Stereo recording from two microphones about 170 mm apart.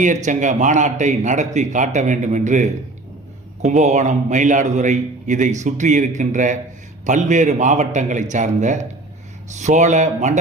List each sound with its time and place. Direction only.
0.0 s a man's voice: 45° right (ahead or behind)